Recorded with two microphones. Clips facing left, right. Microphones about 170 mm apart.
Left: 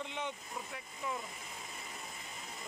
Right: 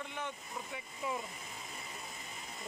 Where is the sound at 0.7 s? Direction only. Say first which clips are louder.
Right 3 dB; 10° right (ahead or behind).